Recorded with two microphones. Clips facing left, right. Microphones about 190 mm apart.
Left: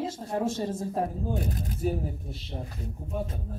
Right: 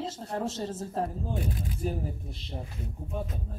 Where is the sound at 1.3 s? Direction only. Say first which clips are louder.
Left 2 dB; 40° left (ahead or behind).